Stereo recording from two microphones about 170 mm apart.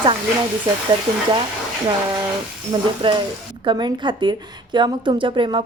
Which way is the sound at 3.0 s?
30° right (ahead or behind).